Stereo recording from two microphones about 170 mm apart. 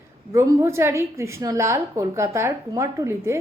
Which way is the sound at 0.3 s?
15° right (ahead or behind).